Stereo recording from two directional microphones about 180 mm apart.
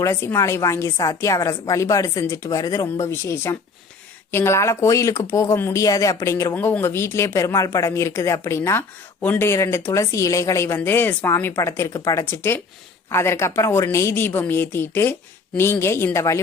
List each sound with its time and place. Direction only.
0.0 s speech: 15° left (ahead or behind)